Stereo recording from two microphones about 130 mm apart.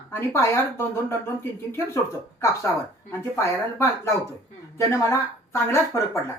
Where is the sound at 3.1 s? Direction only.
20° left (ahead or behind).